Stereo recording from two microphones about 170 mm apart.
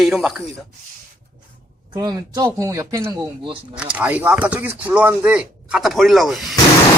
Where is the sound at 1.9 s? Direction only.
20° right (ahead or behind).